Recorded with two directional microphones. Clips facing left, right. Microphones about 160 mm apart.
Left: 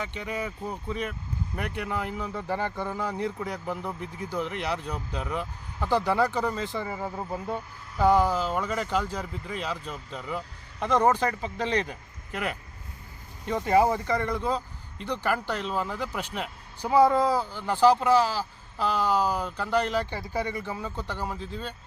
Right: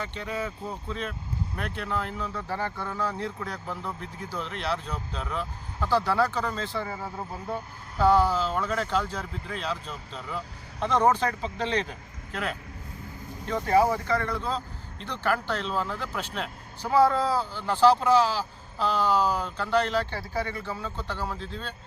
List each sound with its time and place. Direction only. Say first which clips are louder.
0.0 s speech: even; 10° left (ahead or behind)
8.0 s speech: even; 15° left (ahead or behind)
10.8 s speech: even; 10° left (ahead or behind)